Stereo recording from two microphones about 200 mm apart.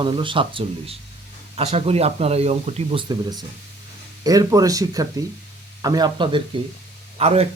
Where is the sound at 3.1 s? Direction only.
20° right (ahead or behind).